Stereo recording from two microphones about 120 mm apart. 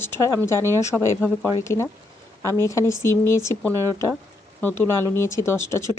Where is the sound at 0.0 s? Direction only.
20° left (ahead or behind).